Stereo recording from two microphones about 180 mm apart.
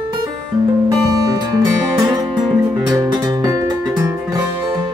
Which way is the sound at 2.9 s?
20° right (ahead or behind).